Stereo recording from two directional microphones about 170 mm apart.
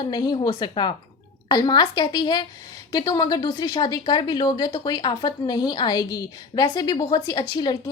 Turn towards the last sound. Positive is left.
turn(degrees=25)  # may be behind; listen again after turning